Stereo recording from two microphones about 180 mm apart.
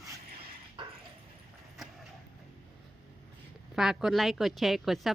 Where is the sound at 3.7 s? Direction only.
Centre (ahead or behind).